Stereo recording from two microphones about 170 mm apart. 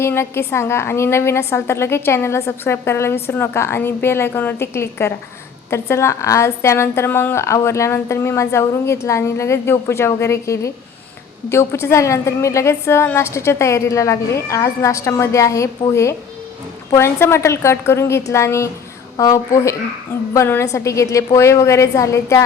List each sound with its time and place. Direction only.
0.0 s a woman's voice: 15° left (ahead or behind)